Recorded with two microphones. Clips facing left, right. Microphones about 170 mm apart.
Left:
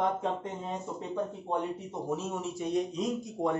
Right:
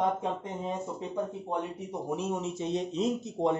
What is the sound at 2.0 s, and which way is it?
Speech, 15° right (ahead or behind).